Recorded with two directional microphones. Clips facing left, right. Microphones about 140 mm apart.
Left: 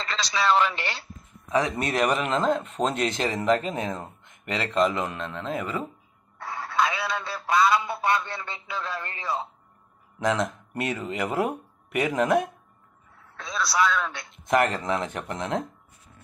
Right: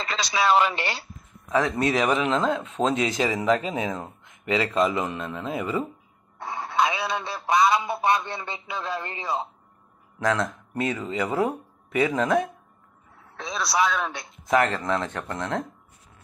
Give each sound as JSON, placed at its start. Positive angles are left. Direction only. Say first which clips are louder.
{"t": 0.0, "sound": "speech", "louder": "right 2 dB", "side_deg": -15}
{"t": 1.5, "sound": "speech", "louder": "right 2 dB", "side_deg": 15}
{"t": 1.9, "sound": "speech", "louder": "right 2 dB", "side_deg": 0}
{"t": 6.3, "sound": "a sound", "louder": "right 1 dB", "side_deg": -20}
{"t": 10.2, "sound": "speech", "louder": "even", "side_deg": 15}
{"t": 13.4, "sound": "speech", "louder": "right 1 dB", "side_deg": -20}
{"t": 14.9, "sound": "speech", "louder": "right 1 dB", "side_deg": 15}